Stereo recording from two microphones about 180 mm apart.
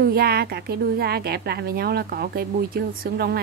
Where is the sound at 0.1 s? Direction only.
60° right (ahead or behind).